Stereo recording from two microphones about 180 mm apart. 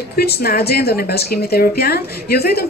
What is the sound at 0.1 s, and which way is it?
Speech, 60° left (ahead or behind).